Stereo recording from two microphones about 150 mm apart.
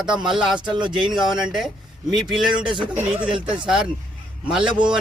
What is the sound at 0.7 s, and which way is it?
Speech, 30° right (ahead or behind).